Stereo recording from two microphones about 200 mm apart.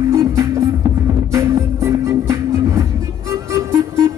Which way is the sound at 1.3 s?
15° right (ahead or behind).